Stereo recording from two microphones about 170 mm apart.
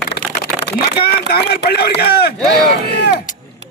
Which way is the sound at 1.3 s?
65° left (ahead or behind).